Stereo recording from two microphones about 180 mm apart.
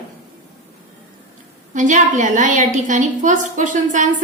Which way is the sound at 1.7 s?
45° right (ahead or behind).